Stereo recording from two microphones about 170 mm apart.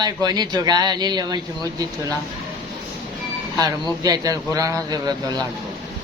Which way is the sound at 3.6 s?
20° right (ahead or behind).